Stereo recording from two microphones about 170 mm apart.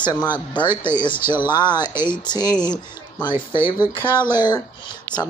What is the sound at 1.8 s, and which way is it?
Speech, 15° right (ahead or behind).